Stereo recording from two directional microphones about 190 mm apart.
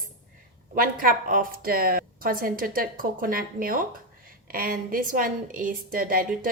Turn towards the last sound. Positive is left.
turn(degrees=-50)  # may be behind; listen again after turning